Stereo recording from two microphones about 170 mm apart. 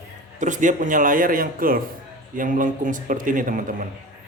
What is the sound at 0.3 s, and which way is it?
Speech, 50° right (ahead or behind).